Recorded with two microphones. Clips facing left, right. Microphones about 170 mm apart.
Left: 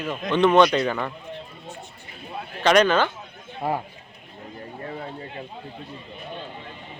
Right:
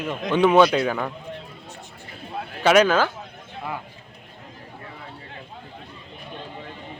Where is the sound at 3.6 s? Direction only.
35° left (ahead or behind).